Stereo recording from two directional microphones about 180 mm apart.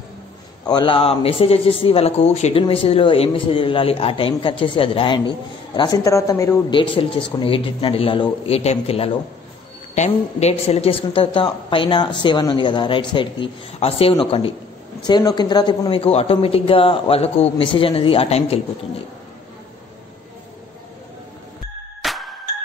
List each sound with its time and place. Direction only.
0.7 s a woman's voice: 25° left (ahead or behind)
6.8 s a woman's voice: 30° left (ahead or behind)
22.0 s music: centre (ahead or behind)